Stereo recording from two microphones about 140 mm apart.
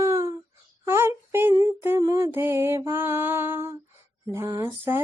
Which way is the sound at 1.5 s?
20° right (ahead or behind).